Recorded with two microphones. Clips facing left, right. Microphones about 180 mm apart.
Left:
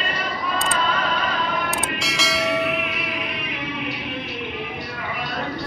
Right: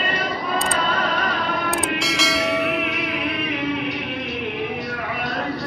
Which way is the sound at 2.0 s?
Centre (ahead or behind).